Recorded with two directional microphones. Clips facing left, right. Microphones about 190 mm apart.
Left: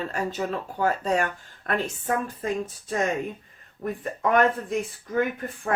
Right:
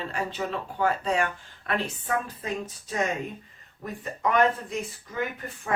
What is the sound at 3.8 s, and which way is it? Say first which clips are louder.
Speech: left 3 dB; 50° left (ahead or behind).